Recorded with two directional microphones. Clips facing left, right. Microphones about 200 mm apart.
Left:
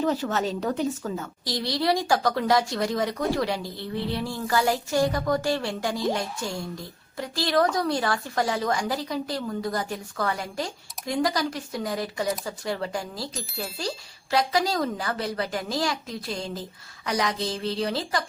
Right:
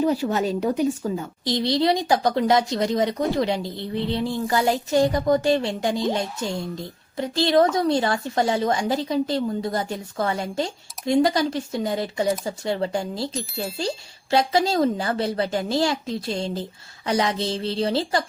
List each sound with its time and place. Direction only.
0.0 s a woman's voice: 10° right (ahead or behind)
13.3 s speech: centre (ahead or behind)
13.7 s a woman's voice: 25° right (ahead or behind)